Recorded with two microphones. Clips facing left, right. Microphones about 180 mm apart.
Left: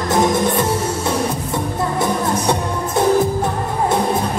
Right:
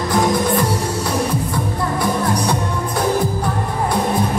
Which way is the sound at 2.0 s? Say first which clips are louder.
Even; 25° left (ahead or behind).